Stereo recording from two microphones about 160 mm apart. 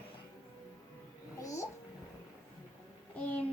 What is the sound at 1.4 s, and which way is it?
Music, 20° left (ahead or behind).